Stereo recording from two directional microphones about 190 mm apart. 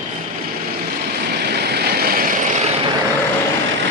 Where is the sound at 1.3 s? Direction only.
60° right (ahead or behind); by 2.6 s 40° right (ahead or behind).